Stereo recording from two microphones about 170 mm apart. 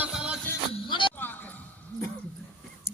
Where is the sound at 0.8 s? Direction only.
30° left (ahead or behind).